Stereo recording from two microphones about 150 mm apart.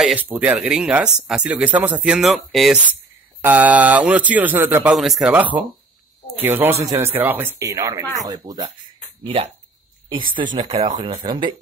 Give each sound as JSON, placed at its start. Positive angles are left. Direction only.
{"t": 0.0, "sound": "speech", "side_deg": -10}
{"t": 3.4, "sound": "speech", "side_deg": -10}
{"t": 4.9, "sound": "speech", "side_deg": 0}
{"t": 9.2, "sound": "speech", "side_deg": -40}